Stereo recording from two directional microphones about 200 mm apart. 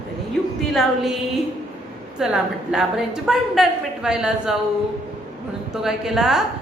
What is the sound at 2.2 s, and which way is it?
A woman's voice, centre (ahead or behind).